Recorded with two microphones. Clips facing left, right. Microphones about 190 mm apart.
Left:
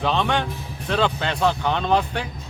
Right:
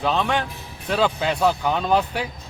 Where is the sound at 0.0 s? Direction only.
Centre (ahead or behind).